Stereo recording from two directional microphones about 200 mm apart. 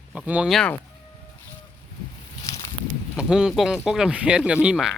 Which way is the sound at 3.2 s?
5° right (ahead or behind).